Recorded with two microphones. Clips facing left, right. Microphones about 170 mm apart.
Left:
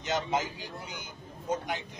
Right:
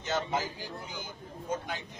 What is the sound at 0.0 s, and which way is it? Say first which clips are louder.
A man's voice: left 1 dB; 20° left (ahead or behind).